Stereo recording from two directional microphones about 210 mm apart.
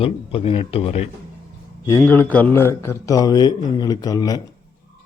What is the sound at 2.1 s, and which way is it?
Speech, 10° left (ahead or behind).